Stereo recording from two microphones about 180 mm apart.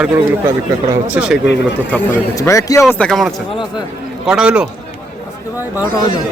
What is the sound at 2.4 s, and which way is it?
Speech, 20° left (ahead or behind).